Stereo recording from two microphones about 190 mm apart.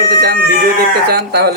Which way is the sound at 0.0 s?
55° right (ahead or behind).